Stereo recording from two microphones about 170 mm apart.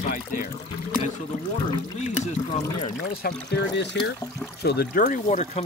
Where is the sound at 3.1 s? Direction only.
70° left (ahead or behind).